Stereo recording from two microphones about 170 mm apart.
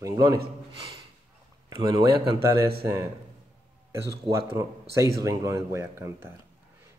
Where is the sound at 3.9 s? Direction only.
20° right (ahead or behind).